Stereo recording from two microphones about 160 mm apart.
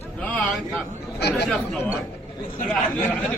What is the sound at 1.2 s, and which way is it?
Speech, 90° left.